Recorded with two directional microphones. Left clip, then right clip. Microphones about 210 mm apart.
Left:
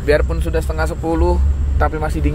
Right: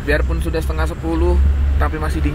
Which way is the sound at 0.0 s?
10° left (ahead or behind).